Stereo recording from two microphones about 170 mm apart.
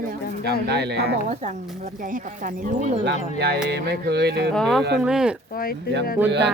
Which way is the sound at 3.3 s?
75° right (ahead or behind).